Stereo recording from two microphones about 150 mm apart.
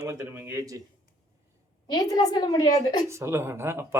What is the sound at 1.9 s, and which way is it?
Speech, 30° left (ahead or behind).